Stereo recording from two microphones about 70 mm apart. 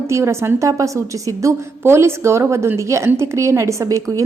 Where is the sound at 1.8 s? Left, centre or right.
Right.